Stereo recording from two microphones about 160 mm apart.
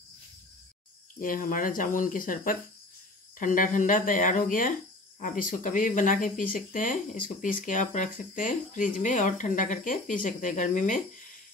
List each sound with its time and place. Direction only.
1.2 s speech: 60° left (ahead or behind)